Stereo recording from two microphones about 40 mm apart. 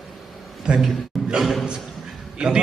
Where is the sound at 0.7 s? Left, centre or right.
Centre.